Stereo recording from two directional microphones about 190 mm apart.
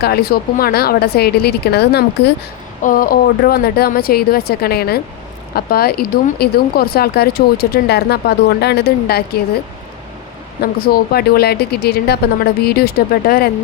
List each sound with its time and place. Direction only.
0.0 s speech: 55° left (ahead or behind)
2.8 s speech: 50° left (ahead or behind)
10.6 s speech: 55° left (ahead or behind)